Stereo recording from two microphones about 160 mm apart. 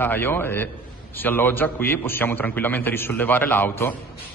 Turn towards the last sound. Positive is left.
turn(degrees=10)  # may be behind; listen again after turning